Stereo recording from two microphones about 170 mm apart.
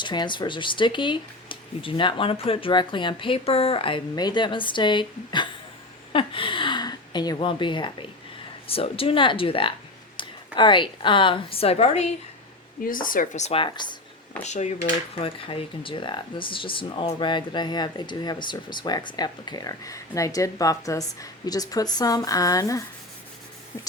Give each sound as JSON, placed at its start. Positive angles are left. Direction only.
{"t": 0.0, "sound": "a woman's voice", "side_deg": 25}
{"t": 12.8, "sound": "speech", "side_deg": 55}
{"t": 14.4, "sound": "speech", "side_deg": 45}